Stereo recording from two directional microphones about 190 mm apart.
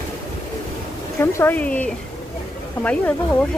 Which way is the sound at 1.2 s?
15° left (ahead or behind).